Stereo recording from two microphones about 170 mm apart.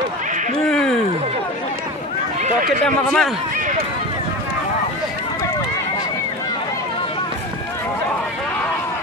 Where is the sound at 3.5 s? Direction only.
55° right (ahead or behind).